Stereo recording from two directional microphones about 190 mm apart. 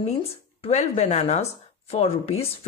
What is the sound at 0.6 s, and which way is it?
Speech, 35° left (ahead or behind).